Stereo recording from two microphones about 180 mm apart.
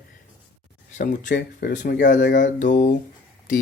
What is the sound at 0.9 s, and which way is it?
Speech, 45° left (ahead or behind).